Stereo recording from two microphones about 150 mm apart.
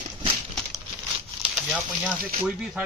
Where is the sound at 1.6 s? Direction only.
5° right (ahead or behind).